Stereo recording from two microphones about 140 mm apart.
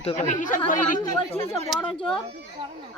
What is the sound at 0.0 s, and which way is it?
A woman's voice, 50° left (ahead or behind).